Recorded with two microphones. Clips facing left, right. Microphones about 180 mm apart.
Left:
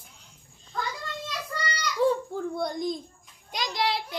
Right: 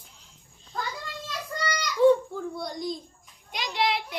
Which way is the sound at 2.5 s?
55° left (ahead or behind).